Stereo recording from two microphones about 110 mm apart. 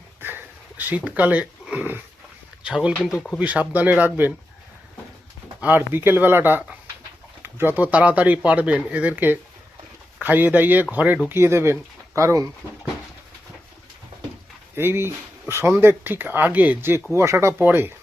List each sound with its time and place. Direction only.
0.2 s a sound: 20° right (ahead or behind)
2.6 s speech: 10° right (ahead or behind)
5.5 s speech: 15° right (ahead or behind)
14.8 s speech: 20° right (ahead or behind)